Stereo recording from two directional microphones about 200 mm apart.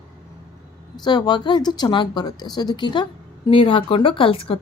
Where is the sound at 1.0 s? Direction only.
20° left (ahead or behind).